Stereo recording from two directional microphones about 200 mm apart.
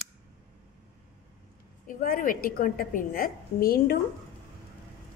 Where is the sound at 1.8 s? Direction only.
45° left (ahead or behind).